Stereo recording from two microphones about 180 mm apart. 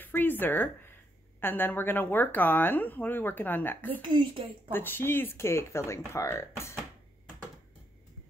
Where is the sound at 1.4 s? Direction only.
10° left (ahead or behind).